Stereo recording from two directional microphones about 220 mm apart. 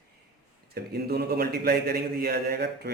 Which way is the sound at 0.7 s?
45° right (ahead or behind).